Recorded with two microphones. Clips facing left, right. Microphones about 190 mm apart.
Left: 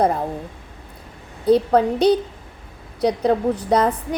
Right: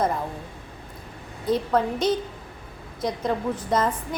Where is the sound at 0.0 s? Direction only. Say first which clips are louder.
Left 6 dB; 35° left (ahead or behind).